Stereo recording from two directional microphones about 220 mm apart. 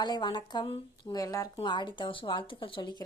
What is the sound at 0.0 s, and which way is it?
Speech, 20° left (ahead or behind).